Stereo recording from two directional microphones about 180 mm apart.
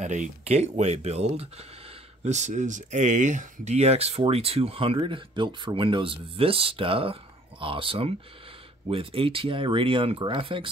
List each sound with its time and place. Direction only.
0.0 s speech: 40° right (ahead or behind)